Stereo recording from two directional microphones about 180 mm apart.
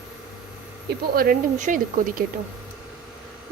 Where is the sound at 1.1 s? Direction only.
50° right (ahead or behind).